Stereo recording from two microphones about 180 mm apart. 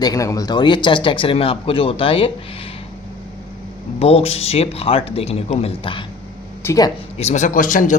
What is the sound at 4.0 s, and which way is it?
Speech, 35° left (ahead or behind).